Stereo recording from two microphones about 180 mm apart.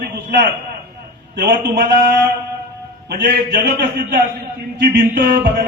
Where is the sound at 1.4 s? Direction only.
65° right (ahead or behind).